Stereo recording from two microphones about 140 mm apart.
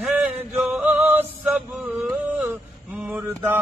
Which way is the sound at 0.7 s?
10° right (ahead or behind).